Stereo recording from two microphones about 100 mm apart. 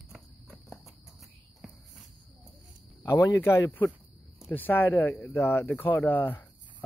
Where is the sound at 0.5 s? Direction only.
Centre (ahead or behind).